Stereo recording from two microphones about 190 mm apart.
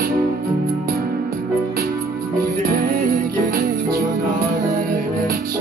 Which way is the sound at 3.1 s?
50° right (ahead or behind).